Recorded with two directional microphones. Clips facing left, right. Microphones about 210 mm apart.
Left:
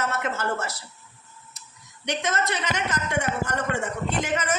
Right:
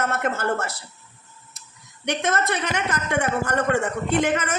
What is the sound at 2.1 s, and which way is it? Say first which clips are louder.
A woman's voice: right 3 dB; 55° right (ahead or behind).